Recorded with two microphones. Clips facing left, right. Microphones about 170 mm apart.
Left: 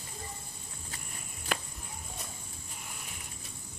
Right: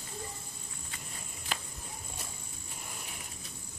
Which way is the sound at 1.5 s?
55° left (ahead or behind).